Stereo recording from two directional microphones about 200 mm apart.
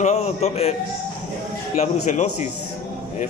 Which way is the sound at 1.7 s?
35° left (ahead or behind).